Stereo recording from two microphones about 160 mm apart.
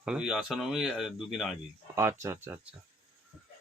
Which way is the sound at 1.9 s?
15° right (ahead or behind).